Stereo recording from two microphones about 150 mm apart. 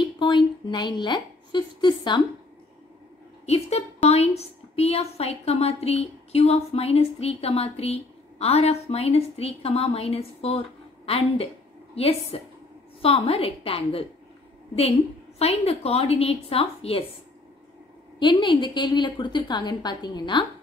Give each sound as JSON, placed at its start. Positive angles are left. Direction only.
{"t": 0.2, "sound": "a woman's voice", "side_deg": 30}
{"t": 3.4, "sound": "a woman's voice", "side_deg": 45}
{"t": 18.2, "sound": "a woman's voice", "side_deg": 30}